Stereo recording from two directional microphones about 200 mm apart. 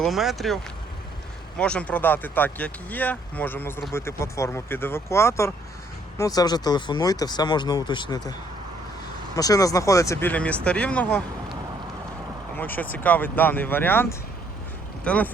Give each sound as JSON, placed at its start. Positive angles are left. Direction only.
{"t": 0.0, "sound": "speech", "side_deg": 0}
{"t": 9.3, "sound": "speech", "side_deg": 15}
{"t": 12.5, "sound": "speech", "side_deg": 10}